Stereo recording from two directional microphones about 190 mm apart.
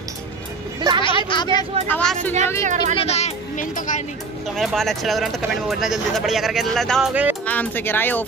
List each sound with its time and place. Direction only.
0.7 s a sound: 25° right (ahead or behind)
1.3 s speech: 20° left (ahead or behind)
1.9 s speech: 10° left (ahead or behind)
2.6 s speech: 40° right (ahead or behind)
3.0 s speech: 35° left (ahead or behind)
4.6 s speech: centre (ahead or behind)
7.4 s speech: 10° left (ahead or behind)